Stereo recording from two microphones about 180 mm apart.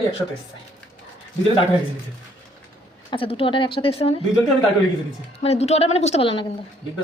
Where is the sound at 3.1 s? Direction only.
30° left (ahead or behind).